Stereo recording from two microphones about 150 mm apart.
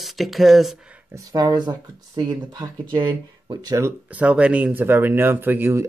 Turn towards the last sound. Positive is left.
turn(degrees=-15)  # may be behind; listen again after turning